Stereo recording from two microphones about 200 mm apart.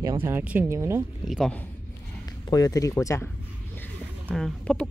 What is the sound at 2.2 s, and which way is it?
Speech, 20° left (ahead or behind).